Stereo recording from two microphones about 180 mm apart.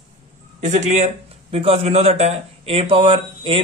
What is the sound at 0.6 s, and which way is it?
A man's voice, 40° right (ahead or behind).